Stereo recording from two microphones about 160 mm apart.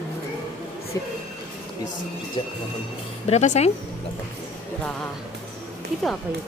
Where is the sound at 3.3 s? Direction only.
45° left (ahead or behind).